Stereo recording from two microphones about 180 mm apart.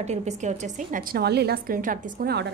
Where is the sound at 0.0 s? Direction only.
40° right (ahead or behind).